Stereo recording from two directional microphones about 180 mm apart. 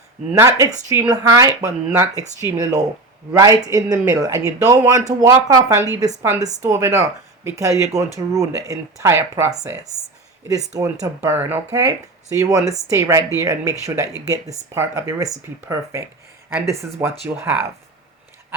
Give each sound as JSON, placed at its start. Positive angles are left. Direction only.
{"t": 0.3, "sound": "speech", "side_deg": -20}
{"t": 10.8, "sound": "speech", "side_deg": -20}